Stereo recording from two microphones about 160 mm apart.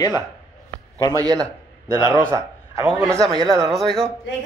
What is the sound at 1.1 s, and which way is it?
Speech, 25° right (ahead or behind).